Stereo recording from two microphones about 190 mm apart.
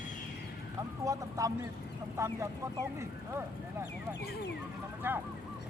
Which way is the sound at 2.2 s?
15° right (ahead or behind).